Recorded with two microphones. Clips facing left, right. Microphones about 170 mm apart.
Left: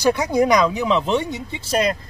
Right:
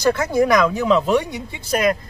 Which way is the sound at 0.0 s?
15° left (ahead or behind).